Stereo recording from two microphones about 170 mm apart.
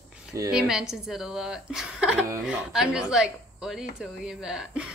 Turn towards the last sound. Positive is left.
turn(degrees=-5)  # may be behind; listen again after turning